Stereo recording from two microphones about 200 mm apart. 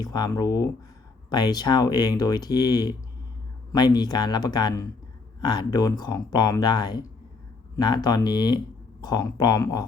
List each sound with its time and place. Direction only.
0.0 s speech: 20° left (ahead or behind)